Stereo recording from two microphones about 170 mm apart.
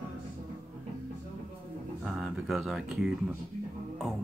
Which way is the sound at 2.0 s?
Centre (ahead or behind).